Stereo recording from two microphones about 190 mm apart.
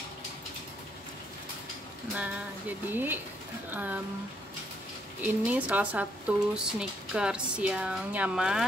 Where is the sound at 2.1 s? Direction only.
5° right (ahead or behind).